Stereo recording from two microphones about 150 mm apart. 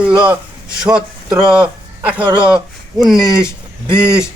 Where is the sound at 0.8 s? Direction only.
5° right (ahead or behind).